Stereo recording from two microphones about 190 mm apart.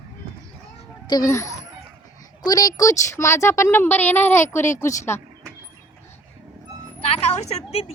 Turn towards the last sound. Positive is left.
turn(degrees=35)  # may be behind; listen again after turning